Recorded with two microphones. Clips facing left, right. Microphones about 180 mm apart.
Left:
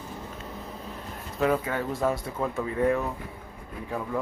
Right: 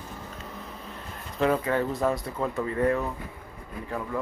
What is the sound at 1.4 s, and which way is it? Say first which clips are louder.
Speech: right 1 dB; centre (ahead or behind).